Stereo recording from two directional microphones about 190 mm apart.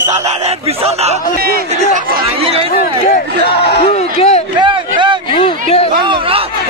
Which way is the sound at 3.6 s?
30° left (ahead or behind).